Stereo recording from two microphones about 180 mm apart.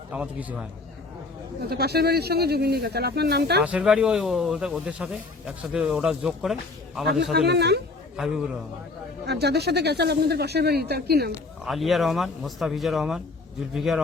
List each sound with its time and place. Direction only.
0.1 s a man's voice: 5° right (ahead or behind)
1.7 s speech: 65° right (ahead or behind)
3.6 s speech: 5° right (ahead or behind)
7.3 s speech: 65° right (ahead or behind)
8.1 s speech: 5° right (ahead or behind)
9.2 s speech: 65° right (ahead or behind)
11.6 s speech: centre (ahead or behind)